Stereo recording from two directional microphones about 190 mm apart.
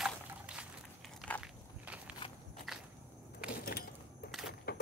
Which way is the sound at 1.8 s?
5° right (ahead or behind).